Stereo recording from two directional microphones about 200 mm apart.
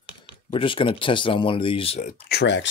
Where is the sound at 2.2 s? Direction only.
55° left (ahead or behind).